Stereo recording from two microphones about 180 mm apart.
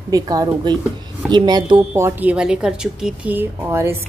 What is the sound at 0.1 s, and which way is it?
Speech, 20° right (ahead or behind).